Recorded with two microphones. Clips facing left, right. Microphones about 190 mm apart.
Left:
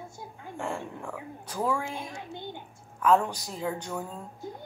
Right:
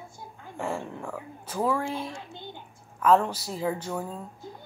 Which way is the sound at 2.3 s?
20° left (ahead or behind).